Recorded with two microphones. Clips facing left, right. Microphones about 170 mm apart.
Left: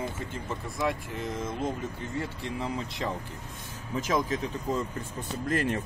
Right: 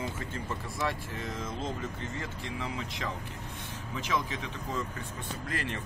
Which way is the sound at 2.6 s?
40° left (ahead or behind).